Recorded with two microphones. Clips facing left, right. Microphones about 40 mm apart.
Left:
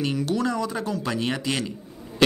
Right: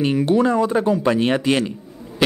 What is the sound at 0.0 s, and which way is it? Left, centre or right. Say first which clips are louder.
Speech: right 8 dB; right.